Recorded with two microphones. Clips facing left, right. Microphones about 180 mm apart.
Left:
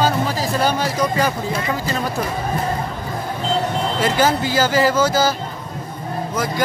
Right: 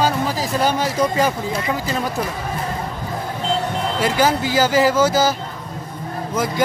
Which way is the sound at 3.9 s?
10° right (ahead or behind).